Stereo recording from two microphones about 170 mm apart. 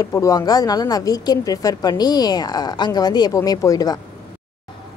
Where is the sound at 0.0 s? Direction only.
20° left (ahead or behind).